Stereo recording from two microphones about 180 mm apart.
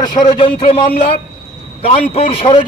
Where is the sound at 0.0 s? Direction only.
25° left (ahead or behind).